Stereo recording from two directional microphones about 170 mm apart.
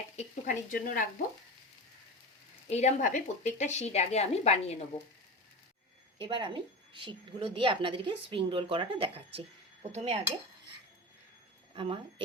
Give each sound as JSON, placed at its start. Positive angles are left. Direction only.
{"t": 0.2, "sound": "speech", "side_deg": 55}
{"t": 2.6, "sound": "speech", "side_deg": 40}
{"t": 6.1, "sound": "a woman's voice", "side_deg": -30}
{"t": 9.9, "sound": "dishes", "side_deg": -35}
{"t": 11.7, "sound": "speech", "side_deg": -30}